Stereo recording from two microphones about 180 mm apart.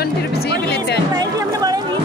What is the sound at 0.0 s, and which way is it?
Music, 65° left (ahead or behind).